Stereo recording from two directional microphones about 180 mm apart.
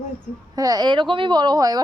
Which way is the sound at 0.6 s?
20° right (ahead or behind).